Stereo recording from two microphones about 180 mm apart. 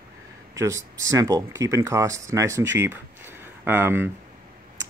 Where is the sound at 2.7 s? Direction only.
15° right (ahead or behind).